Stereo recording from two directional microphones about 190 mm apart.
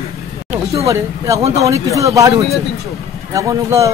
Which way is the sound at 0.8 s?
15° right (ahead or behind).